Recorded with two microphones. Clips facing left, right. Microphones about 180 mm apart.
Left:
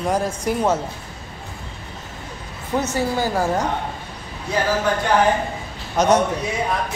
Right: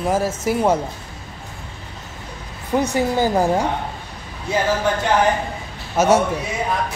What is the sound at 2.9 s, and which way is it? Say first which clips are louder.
Speech: right 4 dB; 15° right (ahead or behind).